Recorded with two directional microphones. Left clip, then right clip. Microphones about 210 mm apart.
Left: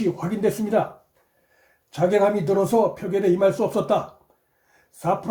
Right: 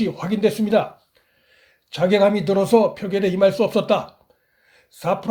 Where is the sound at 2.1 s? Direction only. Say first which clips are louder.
Right 2 dB; 30° right (ahead or behind).